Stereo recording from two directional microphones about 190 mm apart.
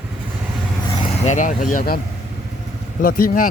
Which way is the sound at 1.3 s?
40° left (ahead or behind).